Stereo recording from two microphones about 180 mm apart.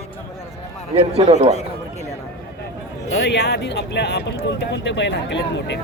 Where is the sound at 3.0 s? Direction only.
70° left (ahead or behind).